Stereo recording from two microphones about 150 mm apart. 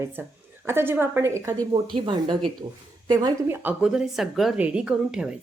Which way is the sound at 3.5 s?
15° right (ahead or behind).